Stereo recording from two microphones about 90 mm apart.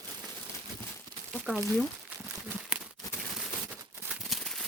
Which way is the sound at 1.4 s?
Centre (ahead or behind).